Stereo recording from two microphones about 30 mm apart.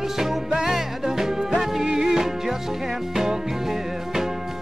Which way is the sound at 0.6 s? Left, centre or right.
Centre.